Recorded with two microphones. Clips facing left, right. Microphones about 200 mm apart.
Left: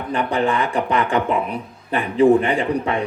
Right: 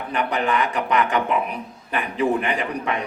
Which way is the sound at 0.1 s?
25° left (ahead or behind).